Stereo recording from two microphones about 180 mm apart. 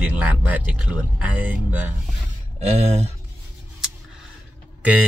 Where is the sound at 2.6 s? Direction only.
35° right (ahead or behind).